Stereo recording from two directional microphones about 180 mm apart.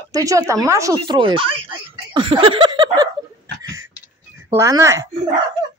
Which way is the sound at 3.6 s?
20° right (ahead or behind).